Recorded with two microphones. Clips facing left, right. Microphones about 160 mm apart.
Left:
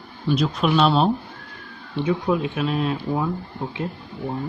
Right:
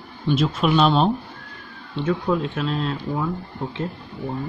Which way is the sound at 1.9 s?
15° left (ahead or behind).